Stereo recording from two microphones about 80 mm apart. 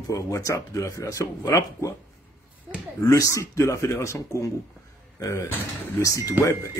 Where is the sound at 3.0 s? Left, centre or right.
Left.